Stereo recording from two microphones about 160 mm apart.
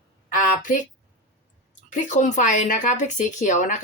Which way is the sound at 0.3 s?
55° left (ahead or behind).